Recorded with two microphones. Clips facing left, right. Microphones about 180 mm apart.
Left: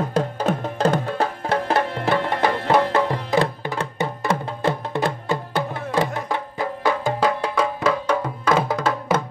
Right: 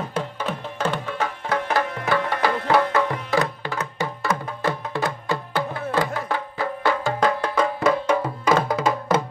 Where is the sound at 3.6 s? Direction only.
20° left (ahead or behind).